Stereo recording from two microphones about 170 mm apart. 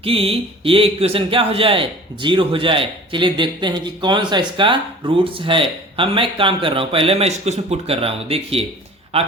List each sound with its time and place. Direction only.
0.0 s speech: 35° right (ahead or behind)